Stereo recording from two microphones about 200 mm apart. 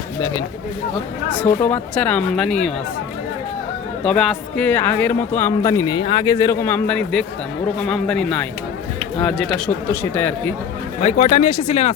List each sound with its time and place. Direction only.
1.6 s speech: 10° left (ahead or behind)
4.0 s speech: 5° left (ahead or behind)
11.0 s speech: 35° left (ahead or behind)